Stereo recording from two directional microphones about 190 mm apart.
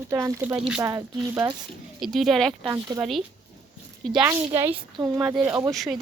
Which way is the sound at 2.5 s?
15° right (ahead or behind).